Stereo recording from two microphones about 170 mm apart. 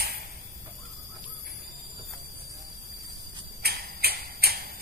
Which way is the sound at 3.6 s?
65° right (ahead or behind).